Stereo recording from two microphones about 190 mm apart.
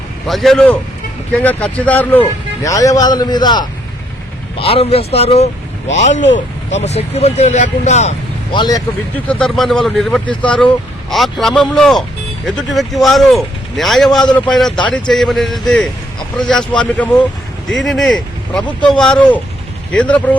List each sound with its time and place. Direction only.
0.3 s a man's voice: centre (ahead or behind); by 8.1 s 35° left (ahead or behind)
8.5 s a man's voice: 20° left (ahead or behind)
9.1 s speech: 5° left (ahead or behind)